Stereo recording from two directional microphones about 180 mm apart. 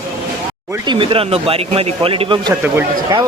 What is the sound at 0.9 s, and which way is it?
Speech, 30° right (ahead or behind).